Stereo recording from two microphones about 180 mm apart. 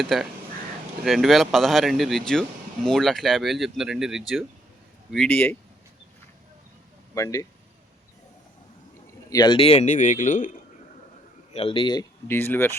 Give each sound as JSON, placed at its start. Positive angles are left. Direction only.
{"t": 0.0, "sound": "speech", "side_deg": 0}
{"t": 7.1, "sound": "speech", "side_deg": 15}
{"t": 9.3, "sound": "speech", "side_deg": 25}
{"t": 11.5, "sound": "a man's voice", "side_deg": 30}
{"t": 12.3, "sound": "speech", "side_deg": 10}